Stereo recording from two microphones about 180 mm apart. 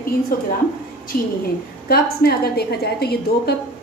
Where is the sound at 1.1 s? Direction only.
55° left (ahead or behind).